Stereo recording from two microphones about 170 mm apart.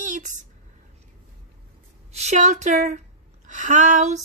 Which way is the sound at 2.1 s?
45° right (ahead or behind).